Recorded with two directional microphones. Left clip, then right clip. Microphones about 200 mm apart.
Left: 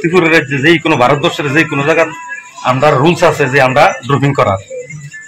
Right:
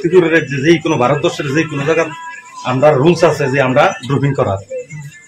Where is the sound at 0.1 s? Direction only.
20° left (ahead or behind).